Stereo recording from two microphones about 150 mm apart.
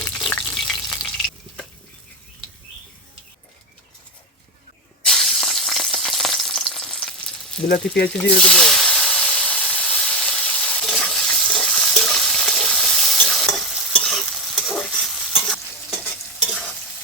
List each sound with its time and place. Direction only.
0.0 s frying: 5° left (ahead or behind)
5.0 s sizzle: 5° left (ahead or behind)
7.6 s speech: 90° left
8.4 s hiss: 5° left (ahead or behind)